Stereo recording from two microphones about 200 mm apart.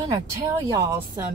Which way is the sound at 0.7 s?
15° right (ahead or behind).